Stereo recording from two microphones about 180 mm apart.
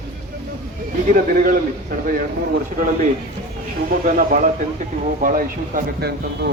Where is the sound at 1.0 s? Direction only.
50° right (ahead or behind).